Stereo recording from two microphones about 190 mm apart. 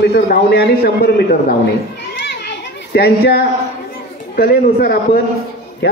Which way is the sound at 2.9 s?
55° left (ahead or behind).